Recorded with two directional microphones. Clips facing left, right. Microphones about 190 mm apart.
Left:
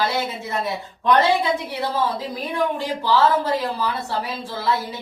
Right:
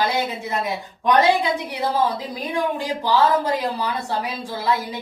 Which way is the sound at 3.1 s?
15° right (ahead or behind).